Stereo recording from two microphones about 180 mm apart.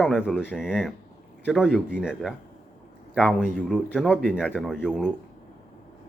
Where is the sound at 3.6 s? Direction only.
5° left (ahead or behind).